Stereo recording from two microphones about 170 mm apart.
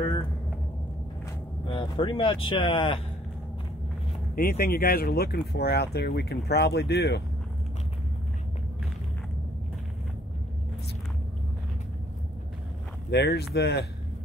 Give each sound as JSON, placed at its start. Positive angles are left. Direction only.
{"t": 1.7, "sound": "speech", "side_deg": 30}
{"t": 4.4, "sound": "speech", "side_deg": 60}
{"t": 13.1, "sound": "speech", "side_deg": 80}